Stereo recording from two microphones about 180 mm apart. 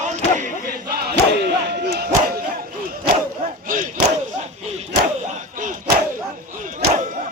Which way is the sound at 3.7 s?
50° right (ahead or behind).